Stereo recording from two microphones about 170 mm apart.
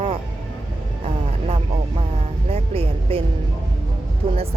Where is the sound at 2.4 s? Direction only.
35° right (ahead or behind).